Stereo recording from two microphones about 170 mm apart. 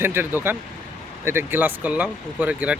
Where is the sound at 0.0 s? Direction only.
15° right (ahead or behind).